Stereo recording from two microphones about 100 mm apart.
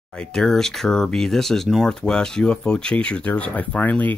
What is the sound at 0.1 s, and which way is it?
Speech, 5° left (ahead or behind).